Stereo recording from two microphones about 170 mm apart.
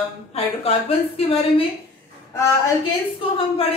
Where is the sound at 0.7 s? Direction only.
35° left (ahead or behind).